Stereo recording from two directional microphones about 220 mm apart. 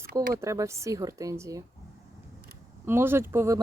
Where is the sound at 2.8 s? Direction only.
10° right (ahead or behind).